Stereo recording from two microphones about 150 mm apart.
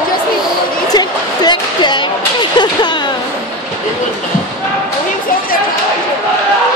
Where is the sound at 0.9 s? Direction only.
30° left (ahead or behind).